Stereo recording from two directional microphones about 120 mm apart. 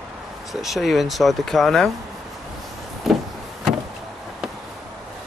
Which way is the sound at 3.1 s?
Centre (ahead or behind).